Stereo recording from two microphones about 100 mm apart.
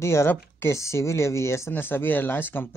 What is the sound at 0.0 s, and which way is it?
Speech, 25° left (ahead or behind).